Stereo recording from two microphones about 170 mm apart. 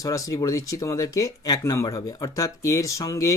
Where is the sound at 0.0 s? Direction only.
20° left (ahead or behind).